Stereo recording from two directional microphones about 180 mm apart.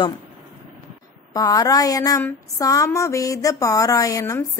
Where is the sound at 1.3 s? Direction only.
20° left (ahead or behind).